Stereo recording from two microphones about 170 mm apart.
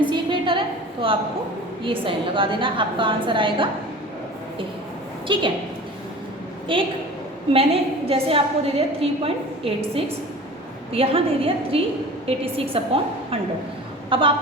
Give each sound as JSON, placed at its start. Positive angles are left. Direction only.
{"t": 0.0, "sound": "a sound", "side_deg": -30}
{"t": 1.0, "sound": "a woman's voice", "side_deg": -30}
{"t": 5.3, "sound": "a woman's voice", "side_deg": -30}
{"t": 6.7, "sound": "a woman's voice", "side_deg": -30}